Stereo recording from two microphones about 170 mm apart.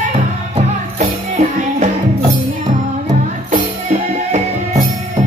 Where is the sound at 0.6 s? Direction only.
45° right (ahead or behind).